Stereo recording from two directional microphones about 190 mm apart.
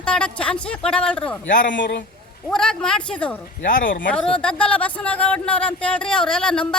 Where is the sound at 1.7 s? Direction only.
65° left (ahead or behind).